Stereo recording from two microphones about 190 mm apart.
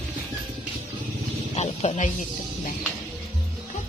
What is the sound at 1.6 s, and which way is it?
Snake, 40° left (ahead or behind).